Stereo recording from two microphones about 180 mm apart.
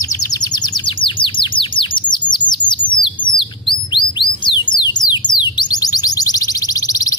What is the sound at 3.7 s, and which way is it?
Chirp, 25° left (ahead or behind).